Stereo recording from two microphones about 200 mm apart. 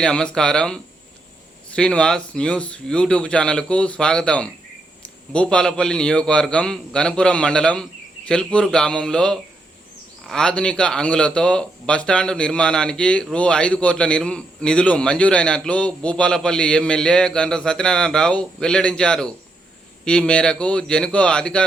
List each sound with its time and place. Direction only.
0.0 s speech: 5° left (ahead or behind)